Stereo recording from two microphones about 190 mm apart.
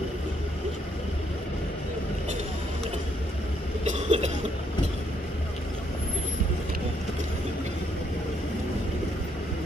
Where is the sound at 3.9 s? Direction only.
35° right (ahead or behind).